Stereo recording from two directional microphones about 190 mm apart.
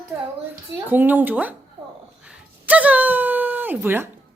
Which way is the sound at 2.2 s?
5° right (ahead or behind).